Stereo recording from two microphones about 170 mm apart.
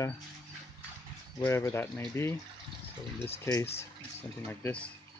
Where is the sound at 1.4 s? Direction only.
10° left (ahead or behind).